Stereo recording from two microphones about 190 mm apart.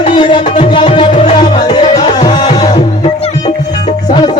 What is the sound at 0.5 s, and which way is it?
Music, 35° left (ahead or behind).